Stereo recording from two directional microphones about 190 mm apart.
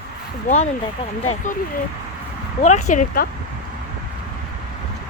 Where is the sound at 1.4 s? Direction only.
40° left (ahead or behind).